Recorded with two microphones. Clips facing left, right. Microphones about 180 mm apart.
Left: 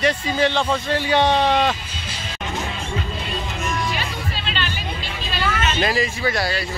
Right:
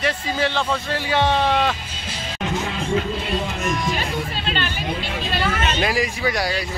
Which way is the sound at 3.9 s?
45° right (ahead or behind).